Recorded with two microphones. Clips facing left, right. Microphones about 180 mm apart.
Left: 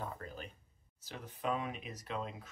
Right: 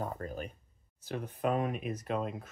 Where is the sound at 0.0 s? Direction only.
45° right (ahead or behind).